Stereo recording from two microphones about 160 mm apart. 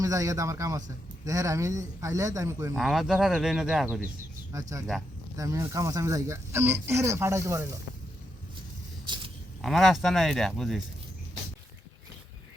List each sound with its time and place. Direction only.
0.0 s a man's voice: 20° right (ahead or behind)
2.7 s speech: centre (ahead or behind)
4.5 s a man's voice: 20° right (ahead or behind)
4.9 s speech: centre (ahead or behind)
5.4 s speech: 20° right (ahead or behind)
9.0 s a sound: 30° right (ahead or behind)
9.6 s speech: centre (ahead or behind)